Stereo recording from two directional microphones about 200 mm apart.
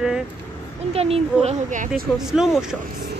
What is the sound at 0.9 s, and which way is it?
Speech, 30° right (ahead or behind).